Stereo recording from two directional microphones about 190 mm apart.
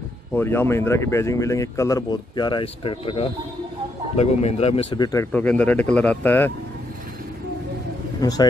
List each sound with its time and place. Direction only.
0.3 s speech: 10° left (ahead or behind)
8.2 s a man's voice: 20° left (ahead or behind)